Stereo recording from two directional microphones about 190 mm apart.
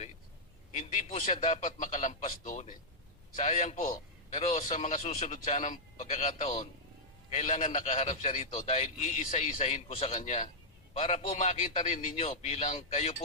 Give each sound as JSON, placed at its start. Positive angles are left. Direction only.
{"t": 1.1, "sound": "a man's voice", "side_deg": 35}